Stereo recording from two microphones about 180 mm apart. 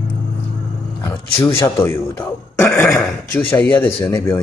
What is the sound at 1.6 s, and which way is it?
A man's voice, 15° left (ahead or behind).